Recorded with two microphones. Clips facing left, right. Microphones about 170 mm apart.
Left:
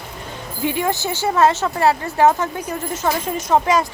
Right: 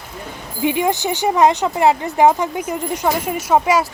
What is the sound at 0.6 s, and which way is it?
Speech, 20° right (ahead or behind).